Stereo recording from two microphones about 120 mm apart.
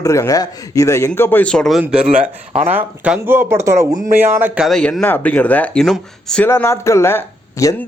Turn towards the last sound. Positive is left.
turn(degrees=25)  # may be behind; listen again after turning